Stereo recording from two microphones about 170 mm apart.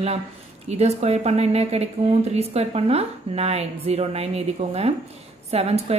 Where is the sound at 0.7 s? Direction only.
40° right (ahead or behind).